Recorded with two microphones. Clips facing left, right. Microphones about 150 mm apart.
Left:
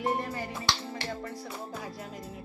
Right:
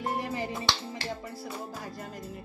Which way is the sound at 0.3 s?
20° right (ahead or behind).